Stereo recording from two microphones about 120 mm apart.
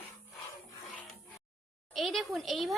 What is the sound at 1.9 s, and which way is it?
Speech, centre (ahead or behind).